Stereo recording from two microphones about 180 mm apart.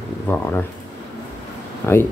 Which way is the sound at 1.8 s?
10° left (ahead or behind).